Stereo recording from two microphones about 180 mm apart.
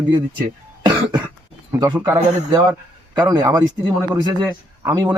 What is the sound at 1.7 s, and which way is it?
A man's voice, 20° right (ahead or behind).